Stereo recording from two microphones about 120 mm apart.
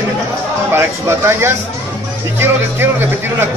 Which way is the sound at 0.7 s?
20° right (ahead or behind).